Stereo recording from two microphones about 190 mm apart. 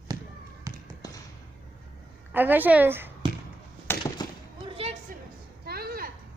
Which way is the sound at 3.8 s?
15° left (ahead or behind).